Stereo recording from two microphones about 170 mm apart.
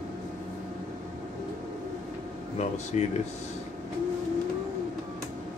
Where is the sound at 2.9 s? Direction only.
40° left (ahead or behind).